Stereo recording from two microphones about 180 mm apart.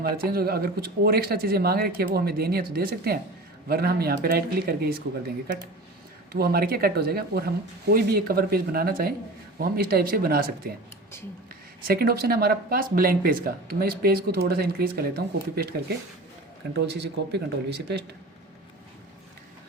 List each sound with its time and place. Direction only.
0.3 s speech: 60° right (ahead or behind)
6.3 s speech: 55° right (ahead or behind)
11.9 s speech: 60° right (ahead or behind)